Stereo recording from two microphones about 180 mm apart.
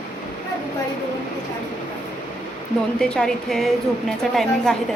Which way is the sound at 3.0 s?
5° left (ahead or behind).